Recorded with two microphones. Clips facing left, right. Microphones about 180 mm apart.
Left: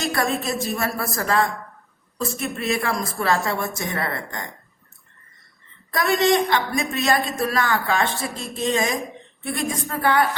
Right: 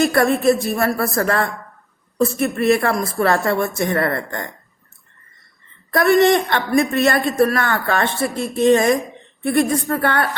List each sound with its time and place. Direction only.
0.0 s a woman's voice: 60° right (ahead or behind)
5.9 s a woman's voice: 55° right (ahead or behind)